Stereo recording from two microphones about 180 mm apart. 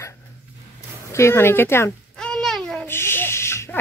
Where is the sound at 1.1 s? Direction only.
15° left (ahead or behind).